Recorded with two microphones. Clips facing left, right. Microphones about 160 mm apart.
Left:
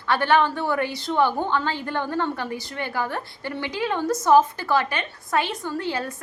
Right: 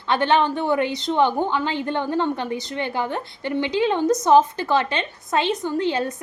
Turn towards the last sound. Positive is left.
turn(degrees=-20)  # may be behind; listen again after turning